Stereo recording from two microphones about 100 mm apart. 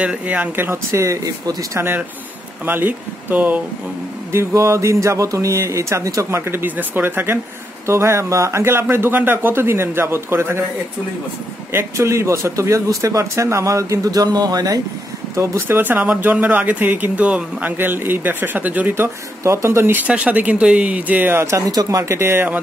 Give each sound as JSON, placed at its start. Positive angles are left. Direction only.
{"t": 0.0, "sound": "speech", "side_deg": -15}
{"t": 4.3, "sound": "speech", "side_deg": -30}
{"t": 11.7, "sound": "speech", "side_deg": -30}
{"t": 15.3, "sound": "speech", "side_deg": -30}
{"t": 19.4, "sound": "speech", "side_deg": -30}